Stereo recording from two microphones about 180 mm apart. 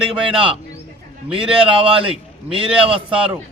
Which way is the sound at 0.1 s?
30° right (ahead or behind).